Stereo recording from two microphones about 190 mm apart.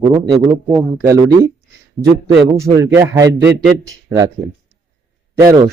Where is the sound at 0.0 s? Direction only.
25° right (ahead or behind).